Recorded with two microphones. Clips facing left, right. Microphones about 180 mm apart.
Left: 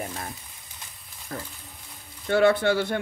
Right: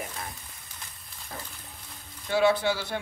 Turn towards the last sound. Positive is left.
turn(degrees=55)  # may be behind; listen again after turning